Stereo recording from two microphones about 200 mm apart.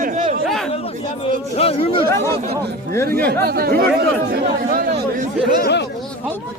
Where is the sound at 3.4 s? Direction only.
50° right (ahead or behind).